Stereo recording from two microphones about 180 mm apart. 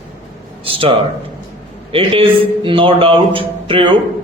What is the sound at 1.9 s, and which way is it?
A man's voice, 30° right (ahead or behind).